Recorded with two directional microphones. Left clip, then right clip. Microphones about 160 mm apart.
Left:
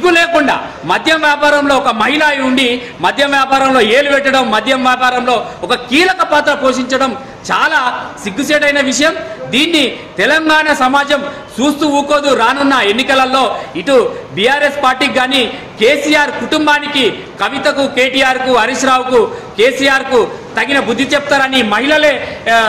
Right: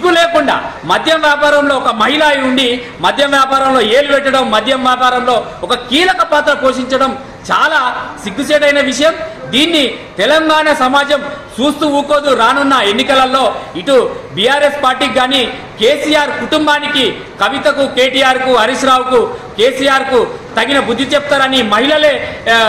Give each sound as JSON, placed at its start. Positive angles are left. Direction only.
{"t": 0.0, "sound": "a man's voice", "side_deg": 10}
{"t": 10.1, "sound": "a man's voice", "side_deg": 15}